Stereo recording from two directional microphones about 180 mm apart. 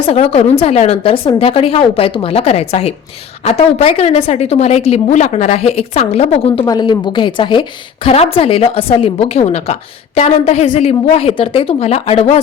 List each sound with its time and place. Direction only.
0.1 s a woman's voice: 35° left (ahead or behind)